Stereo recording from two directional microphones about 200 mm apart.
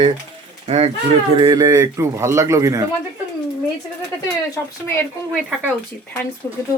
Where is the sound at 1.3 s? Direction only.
20° right (ahead or behind).